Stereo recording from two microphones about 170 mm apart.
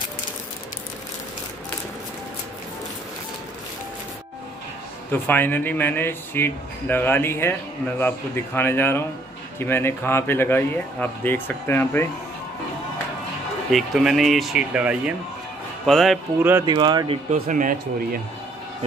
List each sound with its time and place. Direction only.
5.1 s speech: 10° left (ahead or behind)
13.7 s speech: centre (ahead or behind)
16.3 s speech: 10° right (ahead or behind)
16.6 s speech: 25° right (ahead or behind)
17.3 s speech: 50° right (ahead or behind)